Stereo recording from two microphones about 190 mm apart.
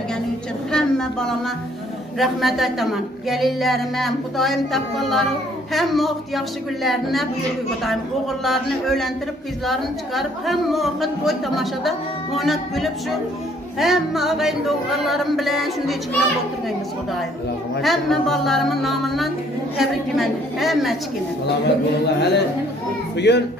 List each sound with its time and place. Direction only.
0.7 s a sound: 5° left (ahead or behind)
2.1 s a woman's voice: centre (ahead or behind)
8.5 s a woman's voice: centre (ahead or behind)
17.8 s a woman's voice: centre (ahead or behind)
22.0 s a man's voice: 60° left (ahead or behind)